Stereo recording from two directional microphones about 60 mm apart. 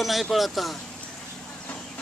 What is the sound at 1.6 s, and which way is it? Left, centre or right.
Vehicle, left.